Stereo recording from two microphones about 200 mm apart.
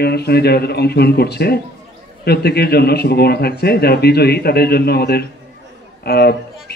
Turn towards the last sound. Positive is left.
turn(degrees=50)  # may be behind; listen again after turning